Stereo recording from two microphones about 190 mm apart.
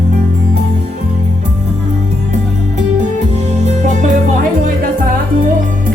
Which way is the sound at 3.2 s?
40° right (ahead or behind).